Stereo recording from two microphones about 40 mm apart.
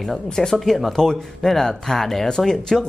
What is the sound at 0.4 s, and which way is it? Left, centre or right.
Speech, centre.